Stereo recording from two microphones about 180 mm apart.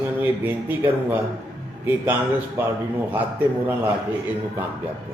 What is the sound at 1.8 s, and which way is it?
Speech, 10° right (ahead or behind).